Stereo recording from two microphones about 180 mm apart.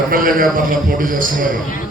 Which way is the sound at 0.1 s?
50° right (ahead or behind).